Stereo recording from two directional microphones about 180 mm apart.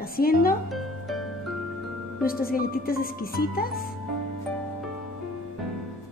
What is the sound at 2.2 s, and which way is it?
A woman's voice, 55° left (ahead or behind).